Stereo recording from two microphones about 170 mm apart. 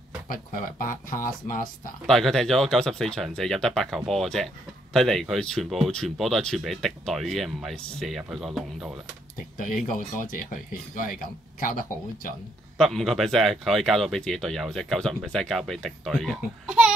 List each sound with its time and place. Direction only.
0.3 s speech: 55° left (ahead or behind)
2.0 s speech: centre (ahead or behind)
9.8 s speech: 55° left (ahead or behind)
12.7 s speech: centre (ahead or behind)